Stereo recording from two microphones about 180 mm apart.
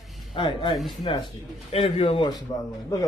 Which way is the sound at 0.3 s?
30° left (ahead or behind).